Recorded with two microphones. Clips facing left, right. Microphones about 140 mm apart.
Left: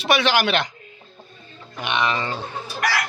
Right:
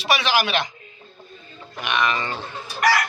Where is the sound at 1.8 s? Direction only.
20° left (ahead or behind).